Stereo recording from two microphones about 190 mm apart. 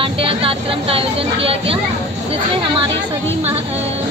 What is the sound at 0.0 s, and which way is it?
Speech, 30° right (ahead or behind).